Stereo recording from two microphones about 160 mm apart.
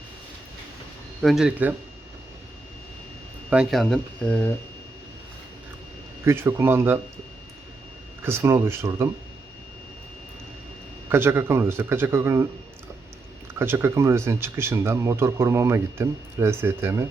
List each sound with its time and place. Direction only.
1.2 s speech: centre (ahead or behind)
3.5 s speech: 5° right (ahead or behind)
6.2 s speech: 15° right (ahead or behind)
8.2 s speech: 15° right (ahead or behind)
11.1 s speech: 15° right (ahead or behind)
13.5 s speech: 15° right (ahead or behind)